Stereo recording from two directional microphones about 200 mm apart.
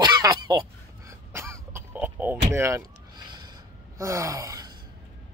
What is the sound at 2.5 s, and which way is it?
Gasp, 15° right (ahead or behind).